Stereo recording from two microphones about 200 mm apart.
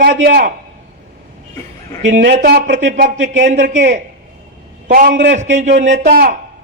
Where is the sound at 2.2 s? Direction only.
50° right (ahead or behind).